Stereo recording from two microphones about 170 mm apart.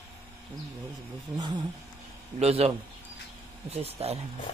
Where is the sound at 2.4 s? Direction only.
40° right (ahead or behind).